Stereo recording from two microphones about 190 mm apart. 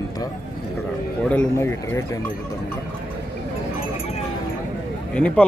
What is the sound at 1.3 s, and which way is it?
Speech, 10° left (ahead or behind).